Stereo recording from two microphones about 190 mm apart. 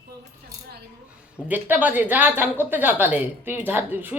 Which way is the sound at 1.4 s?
10° right (ahead or behind).